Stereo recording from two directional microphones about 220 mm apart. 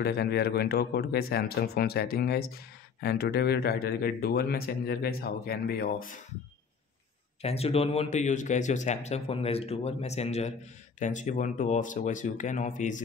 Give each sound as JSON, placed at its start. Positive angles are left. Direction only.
{"t": 0.0, "sound": "speech", "side_deg": 45}
{"t": 7.4, "sound": "speech", "side_deg": 30}